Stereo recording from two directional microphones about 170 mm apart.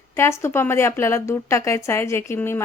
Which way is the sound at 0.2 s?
15° left (ahead or behind).